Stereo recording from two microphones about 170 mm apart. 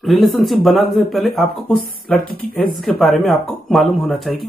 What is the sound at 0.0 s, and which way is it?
Speech, centre (ahead or behind).